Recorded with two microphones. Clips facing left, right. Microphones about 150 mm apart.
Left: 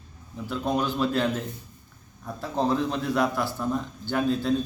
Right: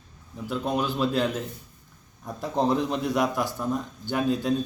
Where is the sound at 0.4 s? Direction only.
10° right (ahead or behind).